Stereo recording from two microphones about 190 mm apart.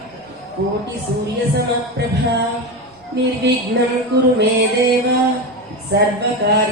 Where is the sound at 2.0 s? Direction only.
60° right (ahead or behind).